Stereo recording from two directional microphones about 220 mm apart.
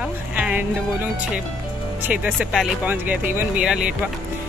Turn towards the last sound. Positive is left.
turn(degrees=-5)  # may be behind; listen again after turning